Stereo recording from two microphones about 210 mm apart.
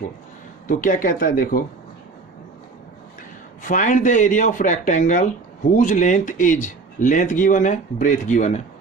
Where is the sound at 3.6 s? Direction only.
35° left (ahead or behind).